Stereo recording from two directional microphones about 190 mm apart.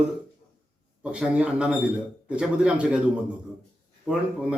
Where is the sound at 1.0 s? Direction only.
5° right (ahead or behind).